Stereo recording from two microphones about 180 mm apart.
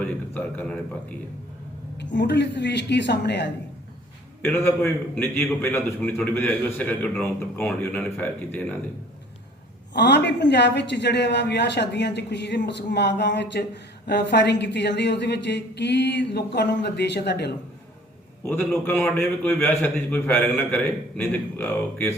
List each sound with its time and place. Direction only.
0.0 s a man's voice: 5° left (ahead or behind)
2.0 s a man's voice: 70° left (ahead or behind)
4.4 s a man's voice: 15° left (ahead or behind)
9.9 s a man's voice: 70° left (ahead or behind)
18.4 s a man's voice: 10° left (ahead or behind)